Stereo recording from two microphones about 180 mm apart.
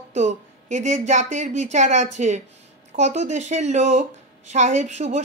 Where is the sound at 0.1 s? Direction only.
40° right (ahead or behind).